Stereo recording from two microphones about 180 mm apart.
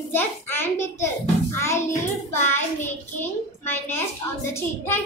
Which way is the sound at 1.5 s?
15° left (ahead or behind).